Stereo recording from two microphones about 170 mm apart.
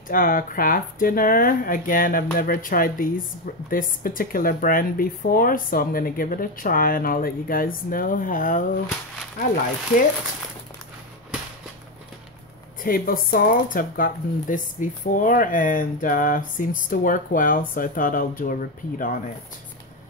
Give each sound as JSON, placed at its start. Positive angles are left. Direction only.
{"t": 0.1, "sound": "speech", "side_deg": 55}
{"t": 12.8, "sound": "speech", "side_deg": 55}